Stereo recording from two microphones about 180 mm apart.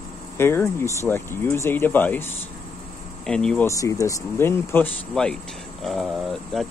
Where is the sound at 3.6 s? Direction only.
15° left (ahead or behind).